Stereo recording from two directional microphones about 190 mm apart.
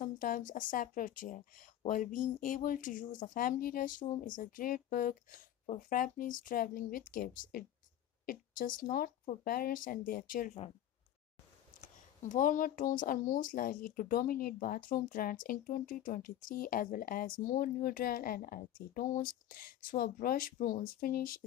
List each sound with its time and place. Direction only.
0.0 s speech: 45° left (ahead or behind)
11.8 s speech: 40° left (ahead or behind)